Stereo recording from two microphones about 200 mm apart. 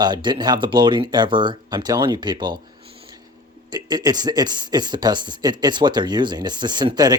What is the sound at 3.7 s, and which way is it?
Speech, 20° right (ahead or behind).